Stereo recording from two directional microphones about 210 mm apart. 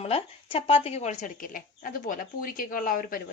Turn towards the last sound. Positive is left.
turn(degrees=45)  # may be behind; listen again after turning